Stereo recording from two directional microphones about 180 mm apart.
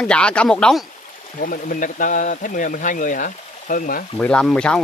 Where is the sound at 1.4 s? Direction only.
50° left (ahead or behind).